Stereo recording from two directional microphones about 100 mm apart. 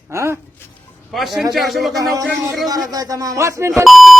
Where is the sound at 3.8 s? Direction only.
Centre (ahead or behind).